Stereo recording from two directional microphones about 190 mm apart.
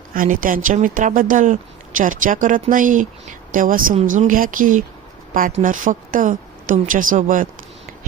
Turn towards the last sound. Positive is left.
turn(degrees=-45)  # may be behind; listen again after turning